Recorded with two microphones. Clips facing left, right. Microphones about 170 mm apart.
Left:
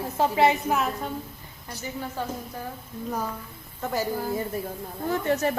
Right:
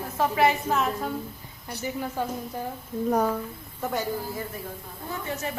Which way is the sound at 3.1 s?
65° right (ahead or behind).